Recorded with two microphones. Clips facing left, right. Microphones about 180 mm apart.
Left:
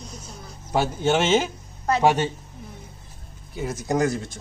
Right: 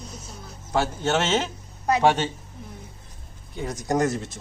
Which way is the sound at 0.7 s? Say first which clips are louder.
Left 2 dB; 10° left (ahead or behind).